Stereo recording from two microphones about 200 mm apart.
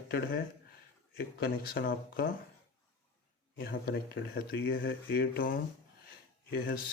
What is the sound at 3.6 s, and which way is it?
Speech, 50° left (ahead or behind).